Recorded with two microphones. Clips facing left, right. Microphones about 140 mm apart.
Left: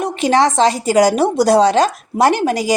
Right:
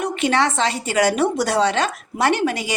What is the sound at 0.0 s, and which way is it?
A woman's voice, 35° left (ahead or behind).